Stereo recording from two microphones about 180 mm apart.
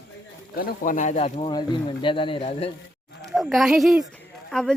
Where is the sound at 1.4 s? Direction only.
25° left (ahead or behind).